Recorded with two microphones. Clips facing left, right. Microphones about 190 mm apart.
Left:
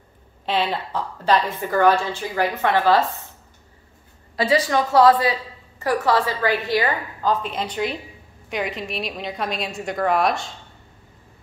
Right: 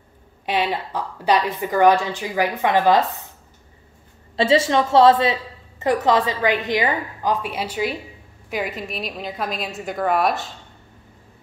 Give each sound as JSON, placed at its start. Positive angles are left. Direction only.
{"t": 0.5, "sound": "a woman's voice", "side_deg": -10}
{"t": 4.4, "sound": "a woman's voice", "side_deg": -25}